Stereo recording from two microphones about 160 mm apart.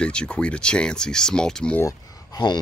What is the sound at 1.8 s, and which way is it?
Speech, 25° left (ahead or behind).